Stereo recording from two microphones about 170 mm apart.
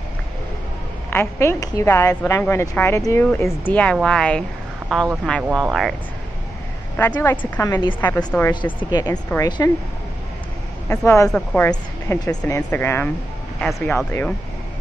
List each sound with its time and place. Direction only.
1.1 s a woman's voice: 15° left (ahead or behind)
7.0 s a woman's voice: 10° left (ahead or behind)
8.7 s speech: 25° left (ahead or behind)
10.9 s a woman's voice: 15° left (ahead or behind)
11.7 s a woman's voice: 20° left (ahead or behind)
13.6 s a woman's voice: centre (ahead or behind)
13.9 s a woman's voice: 15° left (ahead or behind)